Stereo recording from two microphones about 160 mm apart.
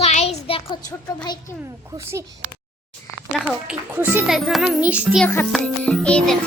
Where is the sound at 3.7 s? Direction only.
10° right (ahead or behind).